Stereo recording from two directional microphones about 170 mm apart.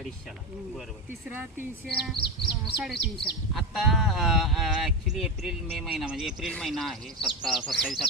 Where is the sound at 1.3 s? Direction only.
10° right (ahead or behind).